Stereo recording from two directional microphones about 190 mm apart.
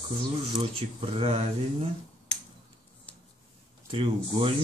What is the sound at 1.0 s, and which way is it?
Speech, 30° right (ahead or behind).